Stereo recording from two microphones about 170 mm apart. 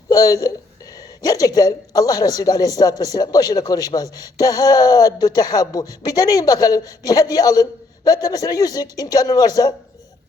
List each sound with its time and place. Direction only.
0.1 s a man's voice: 20° left (ahead or behind)